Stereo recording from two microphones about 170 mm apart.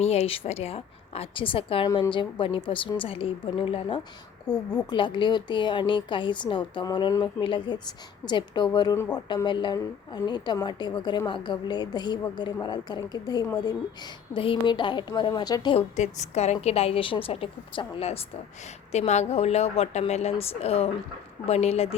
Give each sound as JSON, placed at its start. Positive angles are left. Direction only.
{"t": 0.0, "sound": "a woman's voice", "side_deg": 40}
{"t": 16.0, "sound": "a woman's voice", "side_deg": 40}